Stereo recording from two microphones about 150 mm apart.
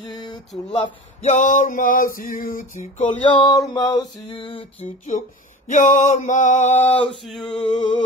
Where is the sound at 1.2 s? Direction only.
55° left (ahead or behind).